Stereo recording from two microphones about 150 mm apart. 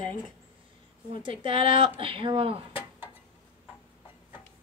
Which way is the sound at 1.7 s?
35° right (ahead or behind).